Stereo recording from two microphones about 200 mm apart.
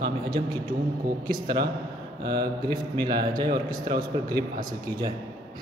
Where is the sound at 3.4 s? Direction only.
45° right (ahead or behind).